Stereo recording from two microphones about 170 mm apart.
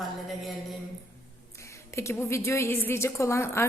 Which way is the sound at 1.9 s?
15° left (ahead or behind).